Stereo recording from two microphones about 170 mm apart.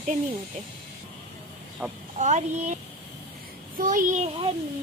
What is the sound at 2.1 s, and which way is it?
Speech, 45° right (ahead or behind).